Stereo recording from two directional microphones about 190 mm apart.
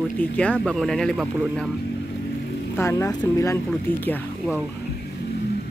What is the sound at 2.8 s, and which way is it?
Speech, 15° left (ahead or behind).